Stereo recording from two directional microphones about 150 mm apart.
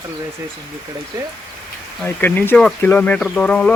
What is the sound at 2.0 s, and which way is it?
Speech, 15° left (ahead or behind).